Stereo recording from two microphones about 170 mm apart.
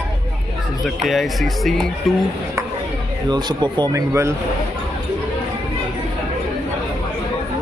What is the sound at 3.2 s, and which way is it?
Speech, 25° right (ahead or behind).